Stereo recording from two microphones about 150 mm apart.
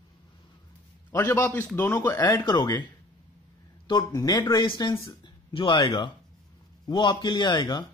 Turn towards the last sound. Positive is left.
turn(degrees=30)  # may be behind; listen again after turning